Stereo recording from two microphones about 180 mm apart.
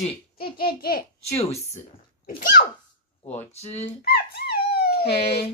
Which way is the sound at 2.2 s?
55° left (ahead or behind).